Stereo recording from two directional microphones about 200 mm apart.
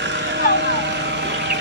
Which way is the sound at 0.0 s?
65° right (ahead or behind).